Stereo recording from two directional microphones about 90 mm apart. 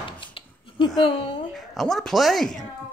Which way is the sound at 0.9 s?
70° left (ahead or behind).